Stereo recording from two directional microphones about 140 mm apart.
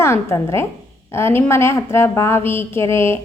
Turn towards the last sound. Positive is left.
turn(degrees=20)  # may be behind; listen again after turning